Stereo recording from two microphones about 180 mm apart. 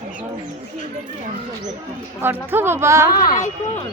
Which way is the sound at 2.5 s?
15° right (ahead or behind).